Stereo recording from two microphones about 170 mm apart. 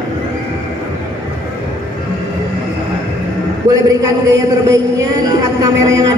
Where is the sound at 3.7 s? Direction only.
20° right (ahead or behind).